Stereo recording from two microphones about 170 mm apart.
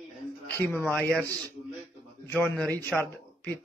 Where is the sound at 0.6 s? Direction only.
10° left (ahead or behind).